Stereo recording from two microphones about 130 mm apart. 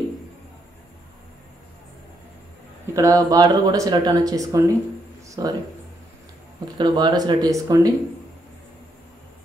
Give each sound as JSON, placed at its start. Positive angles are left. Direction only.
{"t": 2.9, "sound": "speech", "side_deg": -25}
{"t": 6.8, "sound": "speech", "side_deg": -35}